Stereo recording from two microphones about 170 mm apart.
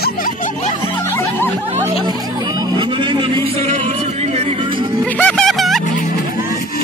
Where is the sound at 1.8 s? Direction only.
25° right (ahead or behind).